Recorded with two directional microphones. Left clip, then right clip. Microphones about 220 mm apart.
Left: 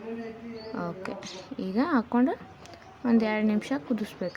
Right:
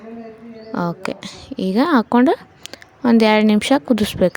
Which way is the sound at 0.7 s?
40° right (ahead or behind).